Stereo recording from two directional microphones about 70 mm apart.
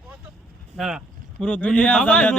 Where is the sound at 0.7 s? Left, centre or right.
Centre.